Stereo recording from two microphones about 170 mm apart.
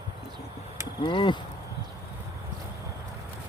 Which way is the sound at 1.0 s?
30° left (ahead or behind).